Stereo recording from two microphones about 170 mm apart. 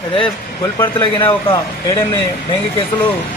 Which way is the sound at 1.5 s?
20° left (ahead or behind).